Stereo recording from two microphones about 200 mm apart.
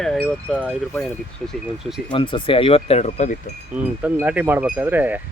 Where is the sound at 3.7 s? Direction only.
5° right (ahead or behind).